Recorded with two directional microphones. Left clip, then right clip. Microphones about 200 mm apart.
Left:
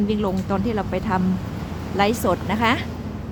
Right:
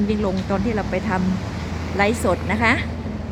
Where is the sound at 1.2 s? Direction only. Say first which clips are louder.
Right 1 dB; 60° left (ahead or behind).